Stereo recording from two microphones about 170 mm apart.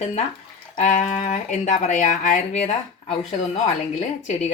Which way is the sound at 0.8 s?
45° left (ahead or behind).